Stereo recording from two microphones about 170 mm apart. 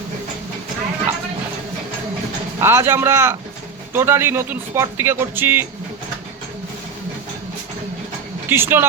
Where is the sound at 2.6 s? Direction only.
15° right (ahead or behind).